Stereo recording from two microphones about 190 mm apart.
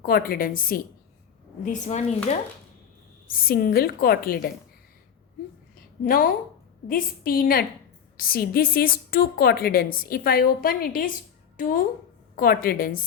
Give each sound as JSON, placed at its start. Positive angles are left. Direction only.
{"t": 0.0, "sound": "a woman's voice", "side_deg": 50}
{"t": 3.2, "sound": "a woman's voice", "side_deg": 50}
{"t": 6.1, "sound": "a woman's voice", "side_deg": 50}